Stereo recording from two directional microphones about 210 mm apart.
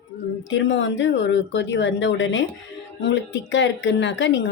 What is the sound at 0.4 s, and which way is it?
A woman's voice, 60° left (ahead or behind).